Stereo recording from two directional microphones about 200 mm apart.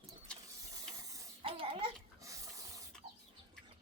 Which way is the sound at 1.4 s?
25° right (ahead or behind).